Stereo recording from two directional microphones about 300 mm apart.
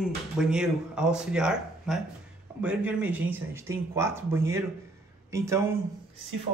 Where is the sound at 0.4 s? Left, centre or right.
Centre.